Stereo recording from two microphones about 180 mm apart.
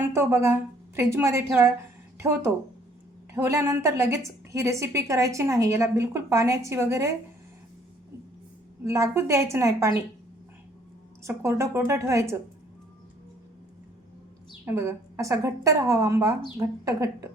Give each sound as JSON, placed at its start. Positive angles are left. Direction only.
{"t": 0.1, "sound": "a woman's voice", "side_deg": -15}
{"t": 8.8, "sound": "a woman's voice", "side_deg": -15}
{"t": 11.2, "sound": "a woman's voice", "side_deg": -15}
{"t": 14.6, "sound": "a woman's voice", "side_deg": -15}